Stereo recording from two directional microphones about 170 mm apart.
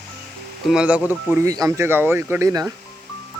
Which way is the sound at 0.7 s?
5° right (ahead or behind).